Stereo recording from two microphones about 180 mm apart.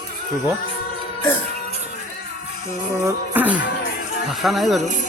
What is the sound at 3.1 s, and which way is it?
Music, 10° right (ahead or behind).